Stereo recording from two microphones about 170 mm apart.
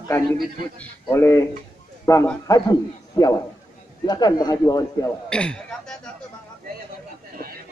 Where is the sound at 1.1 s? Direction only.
15° left (ahead or behind).